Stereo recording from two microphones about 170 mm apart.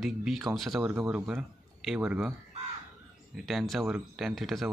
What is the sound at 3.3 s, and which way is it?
Speech, centre (ahead or behind).